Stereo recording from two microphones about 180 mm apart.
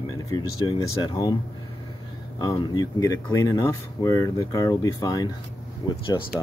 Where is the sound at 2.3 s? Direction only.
20° left (ahead or behind).